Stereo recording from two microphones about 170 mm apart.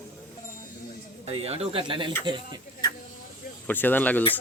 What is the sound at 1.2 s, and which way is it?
Speech, 35° right (ahead or behind).